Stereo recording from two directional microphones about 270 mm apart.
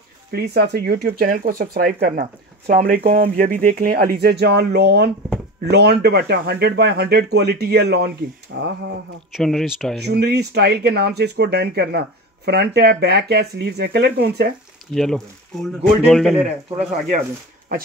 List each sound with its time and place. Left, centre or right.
0.3 s speech: right
9.3 s speech: centre
10.0 s speech: right
15.0 s speech: centre